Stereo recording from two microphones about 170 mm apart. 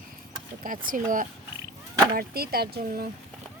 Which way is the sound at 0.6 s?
55° right (ahead or behind).